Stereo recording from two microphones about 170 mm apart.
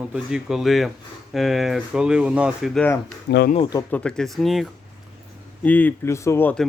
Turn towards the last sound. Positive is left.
turn(degrees=10)  # may be behind; listen again after turning